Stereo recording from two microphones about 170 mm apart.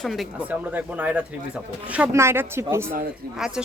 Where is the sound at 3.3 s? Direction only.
5° right (ahead or behind).